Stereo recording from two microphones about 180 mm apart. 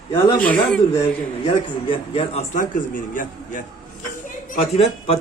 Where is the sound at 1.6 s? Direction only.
30° left (ahead or behind); by 3.6 s 50° left (ahead or behind).